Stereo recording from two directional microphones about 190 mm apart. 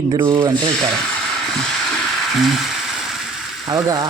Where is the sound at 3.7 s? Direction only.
20° right (ahead or behind).